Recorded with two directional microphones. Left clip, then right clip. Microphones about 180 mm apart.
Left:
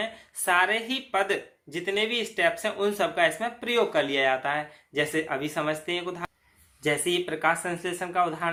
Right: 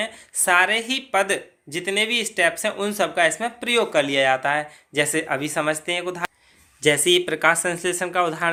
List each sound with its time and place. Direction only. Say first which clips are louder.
0.0 s speech: right 5 dB; 35° right (ahead or behind)
6.8 s speech: right 8 dB; 45° right (ahead or behind)